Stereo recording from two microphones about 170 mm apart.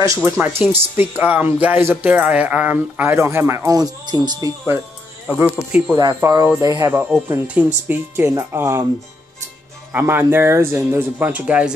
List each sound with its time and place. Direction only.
0.0 s speech: 15° right (ahead or behind)
5.9 s speech: 20° right (ahead or behind)
9.9 s speech: 10° right (ahead or behind)